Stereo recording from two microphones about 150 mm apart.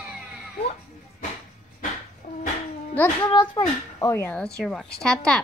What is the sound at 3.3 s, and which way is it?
Speech, 30° left (ahead or behind).